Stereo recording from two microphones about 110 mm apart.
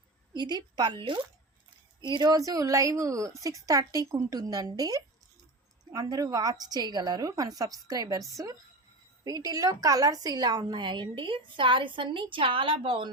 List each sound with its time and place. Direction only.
0.3 s a woman's voice: 40° right (ahead or behind)
9.2 s a woman's voice: 35° right (ahead or behind); by 13.1 s 50° right (ahead or behind)